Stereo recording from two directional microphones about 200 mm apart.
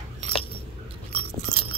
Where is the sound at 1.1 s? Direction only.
30° right (ahead or behind).